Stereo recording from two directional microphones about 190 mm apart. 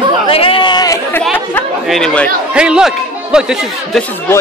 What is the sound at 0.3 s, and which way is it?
Chatter, 30° left (ahead or behind).